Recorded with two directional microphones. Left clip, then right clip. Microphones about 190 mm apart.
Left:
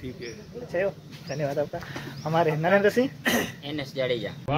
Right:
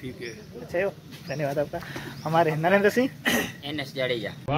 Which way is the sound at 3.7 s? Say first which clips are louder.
Left 1 dB; 5° left (ahead or behind).